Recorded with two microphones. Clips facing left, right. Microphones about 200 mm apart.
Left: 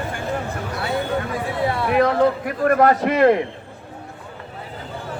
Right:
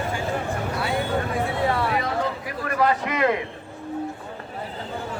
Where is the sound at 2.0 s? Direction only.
55° left (ahead or behind).